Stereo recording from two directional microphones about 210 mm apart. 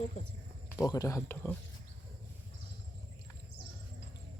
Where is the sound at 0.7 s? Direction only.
15° left (ahead or behind).